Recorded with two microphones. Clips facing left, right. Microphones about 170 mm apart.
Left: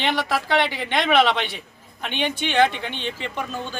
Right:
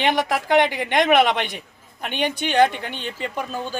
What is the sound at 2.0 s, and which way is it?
A woman's voice, 45° right (ahead or behind).